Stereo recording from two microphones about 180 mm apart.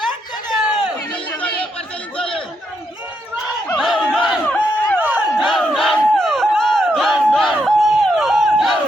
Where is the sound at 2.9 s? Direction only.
10° right (ahead or behind).